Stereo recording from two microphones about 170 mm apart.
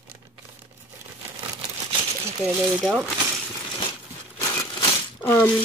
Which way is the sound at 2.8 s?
5° right (ahead or behind).